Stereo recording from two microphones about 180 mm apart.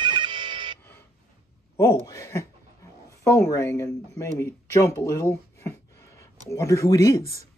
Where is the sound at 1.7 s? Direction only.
20° left (ahead or behind).